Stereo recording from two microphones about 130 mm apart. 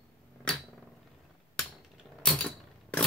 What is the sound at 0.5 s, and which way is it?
Cat, 5° left (ahead or behind).